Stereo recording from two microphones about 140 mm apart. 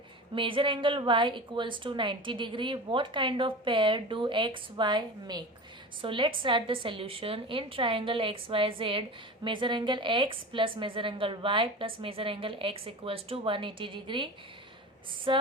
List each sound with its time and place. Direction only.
0.3 s a woman's voice: 35° right (ahead or behind)
15.3 s a woman's voice: 40° right (ahead or behind)